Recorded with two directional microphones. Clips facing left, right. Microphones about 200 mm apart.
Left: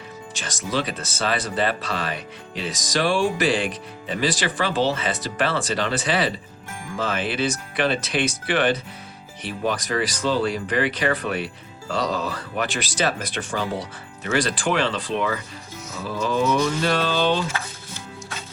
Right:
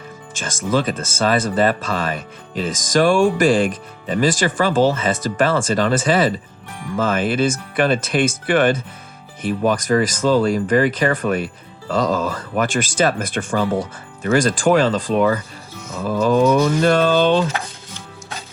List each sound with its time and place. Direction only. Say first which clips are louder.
0.3 s speech: right 6 dB; 50° right (ahead or behind)